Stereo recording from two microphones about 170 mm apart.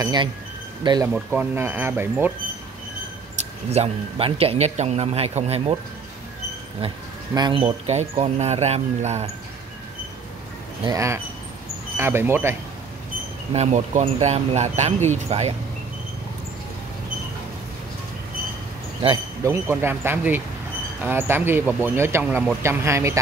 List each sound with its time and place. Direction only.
0.0 s speech: 25° right (ahead or behind)
1.0 s speech: 10° right (ahead or behind)
3.7 s a man's voice: 35° right (ahead or behind)
7.3 s a man's voice: 30° right (ahead or behind)
10.9 s speech: 20° right (ahead or behind)
13.5 s a man's voice: 40° right (ahead or behind)
19.4 s speech: 15° right (ahead or behind)
22.6 s speech: 15° right (ahead or behind)